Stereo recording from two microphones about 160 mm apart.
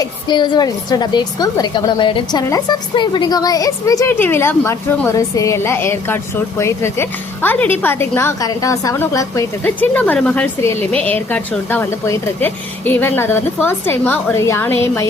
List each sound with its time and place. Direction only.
0.0 s a woman's voice: 30° left (ahead or behind)